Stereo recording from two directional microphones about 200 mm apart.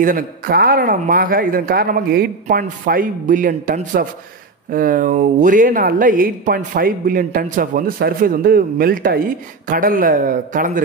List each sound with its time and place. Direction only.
0.0 s speech: 45° right (ahead or behind)